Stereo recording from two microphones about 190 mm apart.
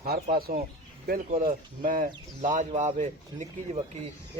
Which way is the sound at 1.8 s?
45° right (ahead or behind).